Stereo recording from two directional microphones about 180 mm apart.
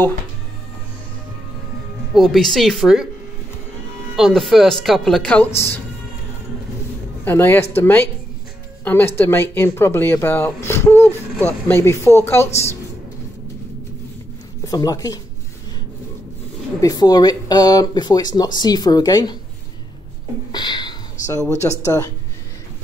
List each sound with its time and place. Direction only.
2.1 s speech: centre (ahead or behind)
4.2 s speech: centre (ahead or behind)
7.2 s speech: 10° left (ahead or behind)
14.6 s speech: 20° left (ahead or behind)
16.8 s speech: 20° left (ahead or behind)
20.5 s a sound: 25° left (ahead or behind)